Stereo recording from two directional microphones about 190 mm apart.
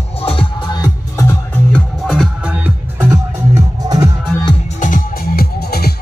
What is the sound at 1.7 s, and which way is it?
Music, centre (ahead or behind).